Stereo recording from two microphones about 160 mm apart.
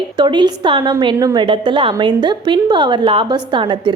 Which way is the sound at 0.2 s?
30° right (ahead or behind).